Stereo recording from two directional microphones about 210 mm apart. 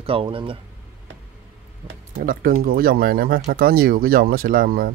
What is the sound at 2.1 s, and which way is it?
Speech, 40° right (ahead or behind).